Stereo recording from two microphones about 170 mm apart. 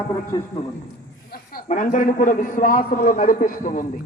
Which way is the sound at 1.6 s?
50° left (ahead or behind).